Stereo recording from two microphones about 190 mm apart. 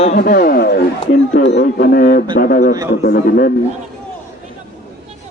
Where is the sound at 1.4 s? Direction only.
65° left (ahead or behind).